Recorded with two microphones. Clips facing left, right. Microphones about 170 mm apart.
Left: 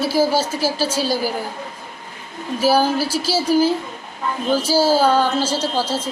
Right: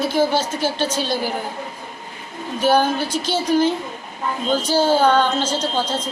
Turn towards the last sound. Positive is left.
turn(degrees=5)  # may be behind; listen again after turning